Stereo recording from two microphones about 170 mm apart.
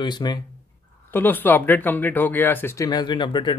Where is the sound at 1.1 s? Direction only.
10° left (ahead or behind).